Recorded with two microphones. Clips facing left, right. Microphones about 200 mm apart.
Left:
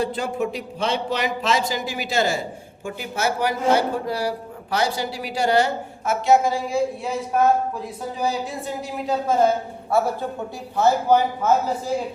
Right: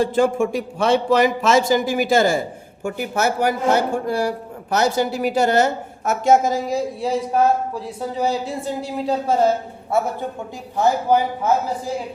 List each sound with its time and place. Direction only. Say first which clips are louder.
0.0 s a woman's voice: right 6 dB; 45° right (ahead or behind); by 10.0 s 30° right (ahead or behind)
10.8 s speech: even; 15° right (ahead or behind)